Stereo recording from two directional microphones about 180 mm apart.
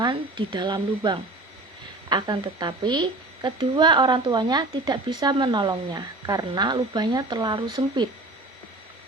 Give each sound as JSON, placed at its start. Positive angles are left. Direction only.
{"t": 0.0, "sound": "speech", "side_deg": -25}